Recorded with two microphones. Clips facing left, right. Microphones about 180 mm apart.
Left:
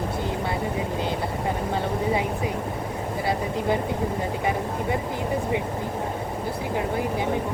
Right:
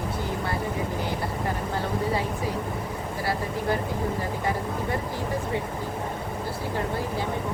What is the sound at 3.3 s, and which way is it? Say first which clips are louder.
Speech: left 2 dB; 20° left (ahead or behind).